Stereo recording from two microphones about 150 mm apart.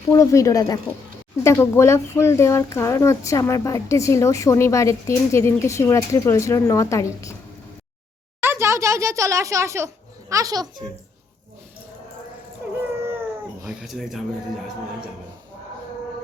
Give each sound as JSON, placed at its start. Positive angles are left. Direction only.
{"t": 0.1, "sound": "speech", "side_deg": 20}
{"t": 8.4, "sound": "speech", "side_deg": -15}
{"t": 12.6, "sound": "a sound", "side_deg": -10}
{"t": 13.7, "sound": "speech", "side_deg": 0}